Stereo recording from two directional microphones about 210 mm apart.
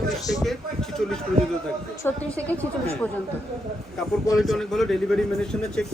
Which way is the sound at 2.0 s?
10° left (ahead or behind).